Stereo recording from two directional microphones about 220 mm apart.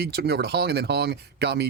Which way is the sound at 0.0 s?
50° right (ahead or behind).